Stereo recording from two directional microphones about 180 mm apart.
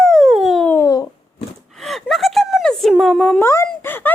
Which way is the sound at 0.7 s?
15° left (ahead or behind).